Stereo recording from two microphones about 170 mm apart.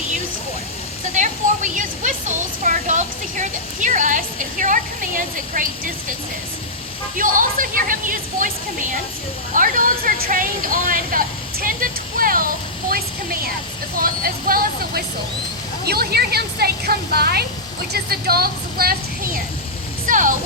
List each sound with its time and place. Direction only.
1.1 s a sound: 50° right (ahead or behind)
7.2 s a woman's voice: 55° right (ahead or behind)
15.9 s a woman's voice: 70° right (ahead or behind)
20.1 s music: 50° right (ahead or behind)